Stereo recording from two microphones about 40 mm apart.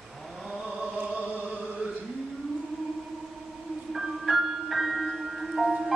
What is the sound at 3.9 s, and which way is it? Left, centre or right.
Music, centre.